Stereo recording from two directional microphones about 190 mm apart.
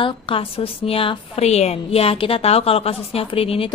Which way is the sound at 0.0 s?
30° left (ahead or behind).